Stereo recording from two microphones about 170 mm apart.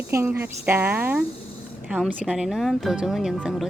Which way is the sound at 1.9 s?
Centre (ahead or behind).